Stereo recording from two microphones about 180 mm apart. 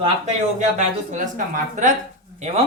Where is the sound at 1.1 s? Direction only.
45° right (ahead or behind).